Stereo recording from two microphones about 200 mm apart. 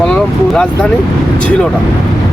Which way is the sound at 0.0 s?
5° left (ahead or behind).